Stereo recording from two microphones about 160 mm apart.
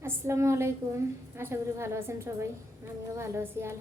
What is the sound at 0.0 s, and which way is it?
A woman's voice, 20° right (ahead or behind).